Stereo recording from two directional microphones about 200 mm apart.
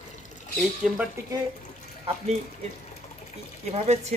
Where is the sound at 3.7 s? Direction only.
35° right (ahead or behind).